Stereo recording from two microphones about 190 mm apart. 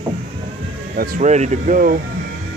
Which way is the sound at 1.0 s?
40° right (ahead or behind).